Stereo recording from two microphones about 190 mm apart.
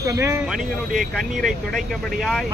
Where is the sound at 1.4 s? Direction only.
Centre (ahead or behind).